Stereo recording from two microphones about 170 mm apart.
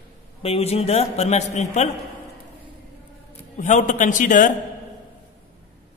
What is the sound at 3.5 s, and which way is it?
Speech, 45° left (ahead or behind).